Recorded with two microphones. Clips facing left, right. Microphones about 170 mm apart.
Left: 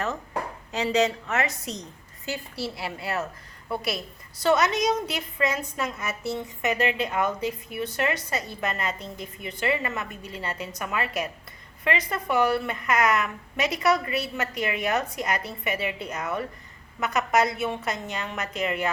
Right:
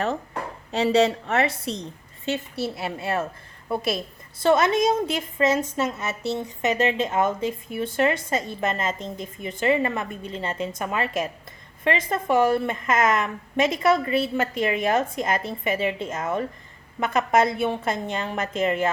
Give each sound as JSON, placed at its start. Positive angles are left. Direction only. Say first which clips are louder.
{"t": 0.7, "sound": "a woman's voice", "louder": "right 4 dB", "side_deg": -35}